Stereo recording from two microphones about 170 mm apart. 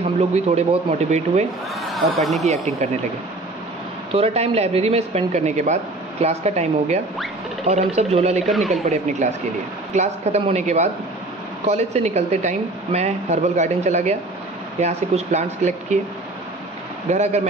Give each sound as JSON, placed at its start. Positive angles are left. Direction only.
{"t": 0.3, "sound": "speech", "side_deg": -40}
{"t": 1.8, "sound": "speech", "side_deg": 0}
{"t": 2.4, "sound": "speech", "side_deg": -40}
{"t": 4.1, "sound": "speech", "side_deg": -35}
{"t": 17.1, "sound": "speech", "side_deg": -40}